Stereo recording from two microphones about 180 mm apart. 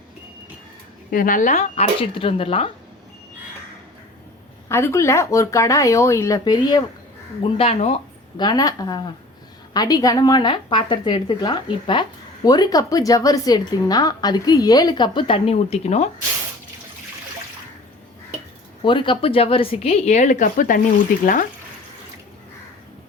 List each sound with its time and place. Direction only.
1.1 s a woman's voice: 50° left (ahead or behind); by 2.7 s 30° left (ahead or behind)
4.7 s speech: 15° left (ahead or behind)
7.5 s a woman's voice: 35° left (ahead or behind)
8.4 s a woman's voice: 20° left (ahead or behind); by 16.0 s 35° left (ahead or behind)
18.8 s a woman's voice: 25° left (ahead or behind); by 20.8 s 50° left (ahead or behind)